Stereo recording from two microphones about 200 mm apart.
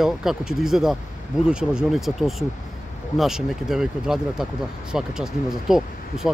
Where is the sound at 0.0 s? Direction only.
Centre (ahead or behind).